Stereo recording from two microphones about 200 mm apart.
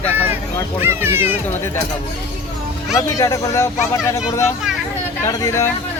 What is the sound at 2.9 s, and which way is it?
Speech, 15° left (ahead or behind).